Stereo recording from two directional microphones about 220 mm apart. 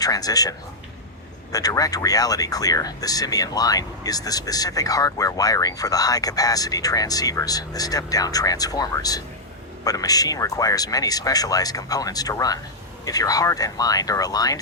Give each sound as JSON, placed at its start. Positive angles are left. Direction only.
{"t": 0.0, "sound": "speech", "side_deg": 15}
{"t": 1.5, "sound": "speech", "side_deg": 15}